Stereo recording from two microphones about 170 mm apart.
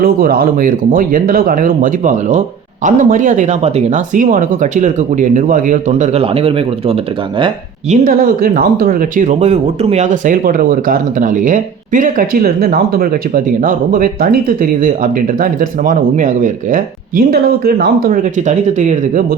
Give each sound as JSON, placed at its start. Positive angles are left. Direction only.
{"t": 0.0, "sound": "speech", "side_deg": -60}
{"t": 7.9, "sound": "speech", "side_deg": -55}